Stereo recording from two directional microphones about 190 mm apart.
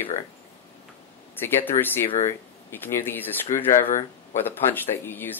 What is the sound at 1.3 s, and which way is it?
Speech, 10° left (ahead or behind).